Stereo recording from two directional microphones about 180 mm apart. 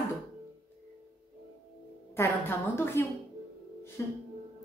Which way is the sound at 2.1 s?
10° left (ahead or behind).